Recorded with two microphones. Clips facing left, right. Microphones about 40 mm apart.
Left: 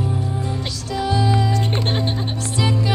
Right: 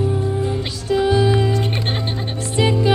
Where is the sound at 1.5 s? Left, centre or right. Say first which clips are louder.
Even; centre.